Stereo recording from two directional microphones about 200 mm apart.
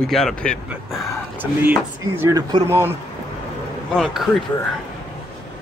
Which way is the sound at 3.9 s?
Centre (ahead or behind).